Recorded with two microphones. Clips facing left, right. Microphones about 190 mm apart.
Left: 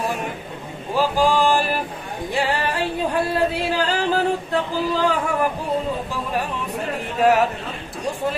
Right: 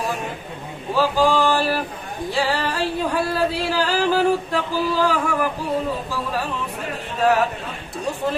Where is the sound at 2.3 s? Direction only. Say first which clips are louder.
Even; 20° left (ahead or behind).